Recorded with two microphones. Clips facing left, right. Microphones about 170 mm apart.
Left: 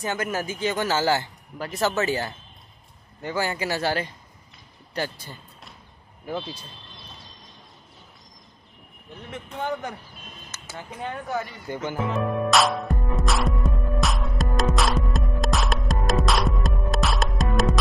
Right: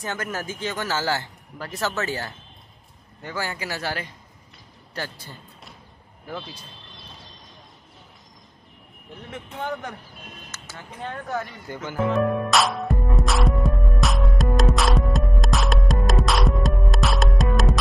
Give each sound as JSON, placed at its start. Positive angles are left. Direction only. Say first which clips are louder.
{"t": 0.0, "sound": "a man's voice", "louder": "left 3 dB", "side_deg": 10}
{"t": 4.9, "sound": "a man's voice", "louder": "left 4 dB", "side_deg": 15}
{"t": 10.5, "sound": "speech", "louder": "left 7 dB", "side_deg": 15}
{"t": 11.7, "sound": "speech", "louder": "left 4 dB", "side_deg": 20}
{"t": 12.0, "sound": "music", "louder": "right 5 dB", "side_deg": 0}